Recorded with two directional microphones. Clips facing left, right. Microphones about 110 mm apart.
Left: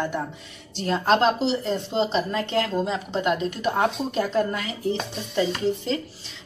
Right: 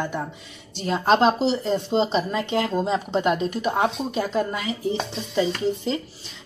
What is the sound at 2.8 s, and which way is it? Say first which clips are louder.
Speech: right 3 dB; 30° right (ahead or behind).